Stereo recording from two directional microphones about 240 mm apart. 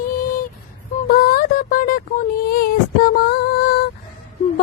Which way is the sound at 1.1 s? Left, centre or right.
Left.